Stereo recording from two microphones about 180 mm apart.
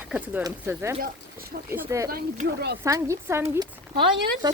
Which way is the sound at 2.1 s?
60° right (ahead or behind).